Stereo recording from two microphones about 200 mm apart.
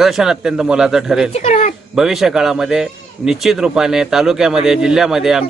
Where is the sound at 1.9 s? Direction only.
Centre (ahead or behind).